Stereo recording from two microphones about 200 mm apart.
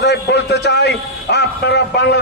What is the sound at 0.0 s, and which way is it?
A man's voice, 55° left (ahead or behind).